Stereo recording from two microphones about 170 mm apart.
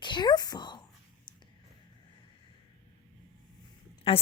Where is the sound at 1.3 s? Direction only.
25° left (ahead or behind).